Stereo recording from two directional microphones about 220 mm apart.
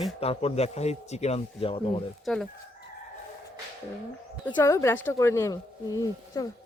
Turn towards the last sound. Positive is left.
turn(degrees=15)  # may be behind; listen again after turning